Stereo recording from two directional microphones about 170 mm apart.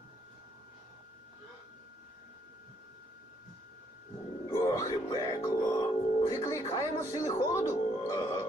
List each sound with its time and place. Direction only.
4.5 s music: 15° left (ahead or behind)